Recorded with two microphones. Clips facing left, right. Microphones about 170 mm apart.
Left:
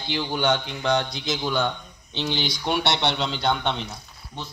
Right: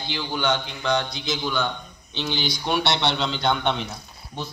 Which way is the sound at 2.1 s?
25° left (ahead or behind).